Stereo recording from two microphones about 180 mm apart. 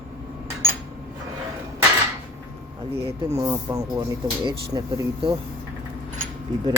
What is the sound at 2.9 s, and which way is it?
Speech, 20° right (ahead or behind).